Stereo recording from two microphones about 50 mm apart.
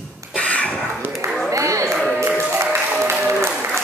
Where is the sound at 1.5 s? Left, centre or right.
Right.